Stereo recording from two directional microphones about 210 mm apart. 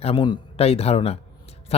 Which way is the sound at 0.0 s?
25° left (ahead or behind).